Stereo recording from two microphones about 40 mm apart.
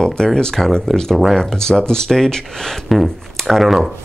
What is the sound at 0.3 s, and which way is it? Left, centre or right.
Speech, centre.